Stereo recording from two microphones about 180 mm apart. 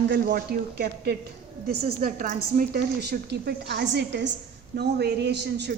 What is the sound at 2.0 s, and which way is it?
Speech, 45° right (ahead or behind).